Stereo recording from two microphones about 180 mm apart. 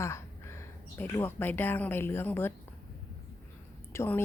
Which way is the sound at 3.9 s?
15° left (ahead or behind).